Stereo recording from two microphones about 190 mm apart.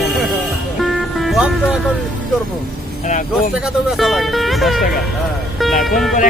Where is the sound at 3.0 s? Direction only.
40° left (ahead or behind).